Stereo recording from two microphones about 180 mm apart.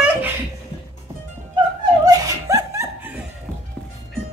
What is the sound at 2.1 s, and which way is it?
Laughter, 20° right (ahead or behind).